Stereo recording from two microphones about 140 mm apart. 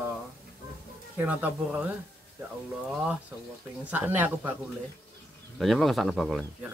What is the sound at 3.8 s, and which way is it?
Speech, 10° right (ahead or behind).